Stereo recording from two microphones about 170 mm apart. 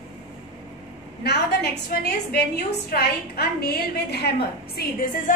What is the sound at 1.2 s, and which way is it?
A woman's voice, 75° left (ahead or behind).